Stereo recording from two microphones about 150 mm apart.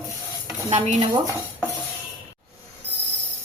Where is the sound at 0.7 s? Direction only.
50° right (ahead or behind).